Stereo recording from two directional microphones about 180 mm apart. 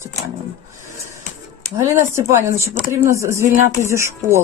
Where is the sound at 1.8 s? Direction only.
15° right (ahead or behind).